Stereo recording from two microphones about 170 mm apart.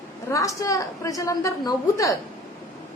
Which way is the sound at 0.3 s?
20° left (ahead or behind).